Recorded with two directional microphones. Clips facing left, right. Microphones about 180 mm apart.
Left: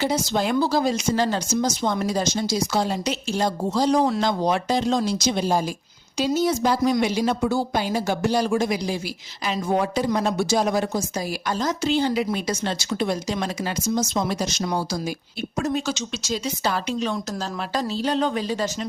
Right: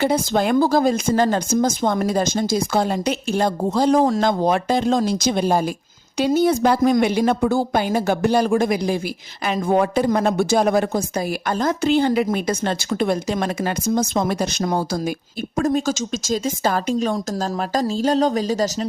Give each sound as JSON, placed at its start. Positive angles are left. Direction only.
{"t": 0.0, "sound": "speech", "side_deg": -55}